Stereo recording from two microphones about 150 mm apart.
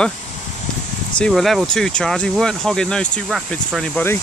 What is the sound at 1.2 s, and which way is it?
Speech, centre (ahead or behind).